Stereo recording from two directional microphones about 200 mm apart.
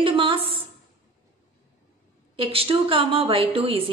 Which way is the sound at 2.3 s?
25° right (ahead or behind).